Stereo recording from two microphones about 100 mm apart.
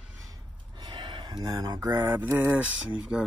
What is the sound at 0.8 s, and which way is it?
Speech, 45° right (ahead or behind).